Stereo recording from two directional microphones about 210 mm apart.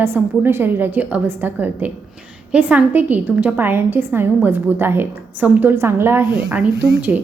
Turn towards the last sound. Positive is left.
turn(degrees=-10)  # may be behind; listen again after turning